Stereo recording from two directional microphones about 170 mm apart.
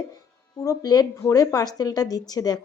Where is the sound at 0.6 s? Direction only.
20° left (ahead or behind).